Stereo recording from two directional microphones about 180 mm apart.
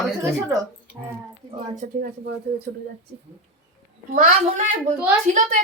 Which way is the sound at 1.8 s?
60° right (ahead or behind).